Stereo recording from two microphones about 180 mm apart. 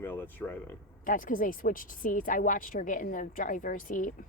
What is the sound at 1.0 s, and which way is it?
Speech, 50° left (ahead or behind).